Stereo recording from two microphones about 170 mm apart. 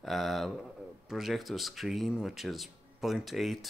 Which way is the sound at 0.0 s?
Centre (ahead or behind).